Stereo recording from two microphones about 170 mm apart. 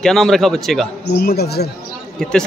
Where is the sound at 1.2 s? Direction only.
65° left (ahead or behind).